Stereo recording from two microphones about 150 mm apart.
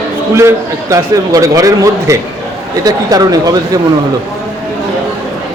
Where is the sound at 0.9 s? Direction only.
20° right (ahead or behind).